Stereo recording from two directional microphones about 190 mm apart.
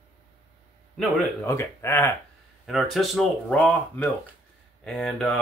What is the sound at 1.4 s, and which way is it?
Speech, 15° left (ahead or behind).